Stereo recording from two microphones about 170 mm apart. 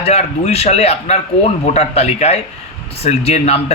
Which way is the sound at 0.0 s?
35° left (ahead or behind).